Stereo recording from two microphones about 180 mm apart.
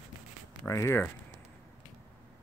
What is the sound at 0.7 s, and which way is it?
Speech, 15° left (ahead or behind).